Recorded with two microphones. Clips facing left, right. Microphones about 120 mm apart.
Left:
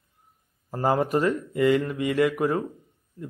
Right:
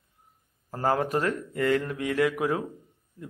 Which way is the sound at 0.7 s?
5° left (ahead or behind).